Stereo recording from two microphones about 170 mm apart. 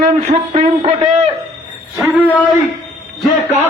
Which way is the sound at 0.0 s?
50° right (ahead or behind).